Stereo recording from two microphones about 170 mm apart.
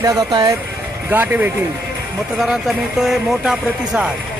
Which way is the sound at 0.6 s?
10° right (ahead or behind).